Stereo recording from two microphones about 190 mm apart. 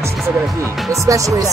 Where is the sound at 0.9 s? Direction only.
15° right (ahead or behind).